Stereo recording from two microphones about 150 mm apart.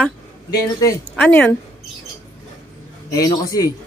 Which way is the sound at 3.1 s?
25° left (ahead or behind).